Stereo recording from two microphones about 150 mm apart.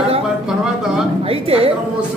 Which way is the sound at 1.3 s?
40° right (ahead or behind).